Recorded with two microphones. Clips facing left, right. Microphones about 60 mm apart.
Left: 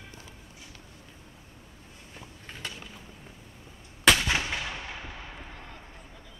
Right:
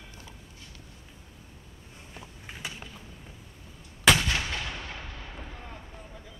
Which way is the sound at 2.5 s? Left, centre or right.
Centre.